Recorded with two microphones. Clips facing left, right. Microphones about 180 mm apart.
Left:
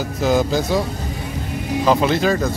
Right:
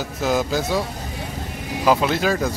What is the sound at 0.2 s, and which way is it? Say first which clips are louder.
Speech: left 3 dB; centre (ahead or behind).